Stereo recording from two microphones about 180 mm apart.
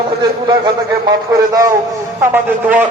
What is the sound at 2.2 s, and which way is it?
Speech, 10° right (ahead or behind).